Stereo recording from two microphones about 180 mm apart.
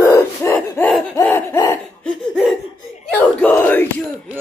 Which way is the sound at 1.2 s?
15° left (ahead or behind).